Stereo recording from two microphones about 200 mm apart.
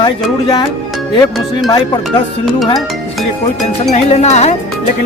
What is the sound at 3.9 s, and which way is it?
Speech, 35° left (ahead or behind).